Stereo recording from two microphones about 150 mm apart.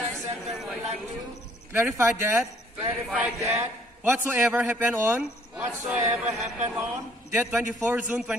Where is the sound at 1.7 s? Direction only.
15° right (ahead or behind).